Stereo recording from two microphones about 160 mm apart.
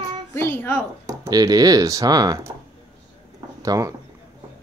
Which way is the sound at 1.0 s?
25° right (ahead or behind).